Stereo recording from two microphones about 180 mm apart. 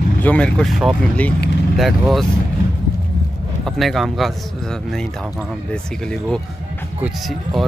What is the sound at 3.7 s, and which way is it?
Speech, centre (ahead or behind).